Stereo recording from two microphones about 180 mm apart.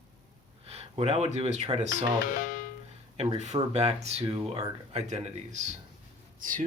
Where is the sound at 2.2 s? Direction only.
45° left (ahead or behind).